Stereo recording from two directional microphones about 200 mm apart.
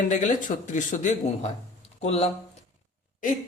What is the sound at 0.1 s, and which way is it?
A man's voice, 40° left (ahead or behind).